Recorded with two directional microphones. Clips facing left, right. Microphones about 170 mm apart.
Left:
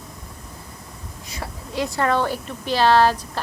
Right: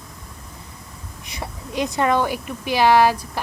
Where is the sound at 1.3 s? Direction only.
20° right (ahead or behind).